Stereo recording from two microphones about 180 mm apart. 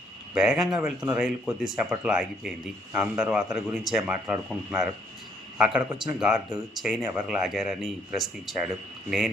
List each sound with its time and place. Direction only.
0.3 s a man's voice: 5° right (ahead or behind)